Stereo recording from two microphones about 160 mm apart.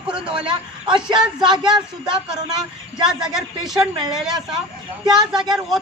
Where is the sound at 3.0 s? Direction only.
5° right (ahead or behind).